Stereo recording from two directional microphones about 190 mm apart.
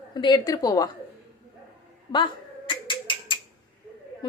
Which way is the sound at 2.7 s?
25° left (ahead or behind).